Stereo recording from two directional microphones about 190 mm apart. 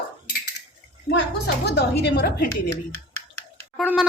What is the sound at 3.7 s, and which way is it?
Speech, 5° right (ahead or behind).